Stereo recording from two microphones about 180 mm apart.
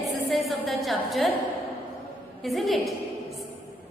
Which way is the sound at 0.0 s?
Centre (ahead or behind).